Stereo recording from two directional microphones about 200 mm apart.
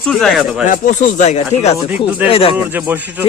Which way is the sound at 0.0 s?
Centre (ahead or behind).